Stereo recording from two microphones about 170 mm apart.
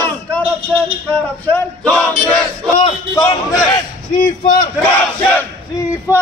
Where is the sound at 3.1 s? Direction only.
20° left (ahead or behind).